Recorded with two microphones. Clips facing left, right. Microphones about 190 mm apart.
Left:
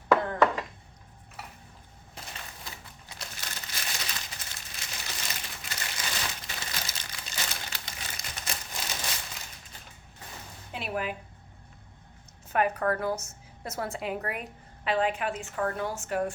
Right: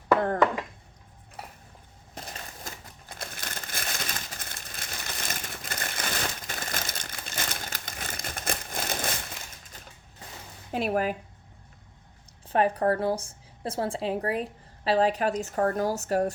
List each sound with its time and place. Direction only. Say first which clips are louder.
2.1 s crumpling: right 4 dB; 45° right (ahead or behind)
10.7 s speech: right 7 dB; 45° right (ahead or behind)
12.5 s a woman's voice: right 3 dB; 30° right (ahead or behind)